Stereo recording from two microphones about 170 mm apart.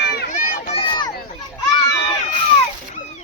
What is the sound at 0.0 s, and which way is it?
Run, 75° left (ahead or behind).